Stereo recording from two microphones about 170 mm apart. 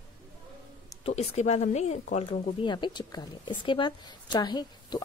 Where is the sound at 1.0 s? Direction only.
40° left (ahead or behind).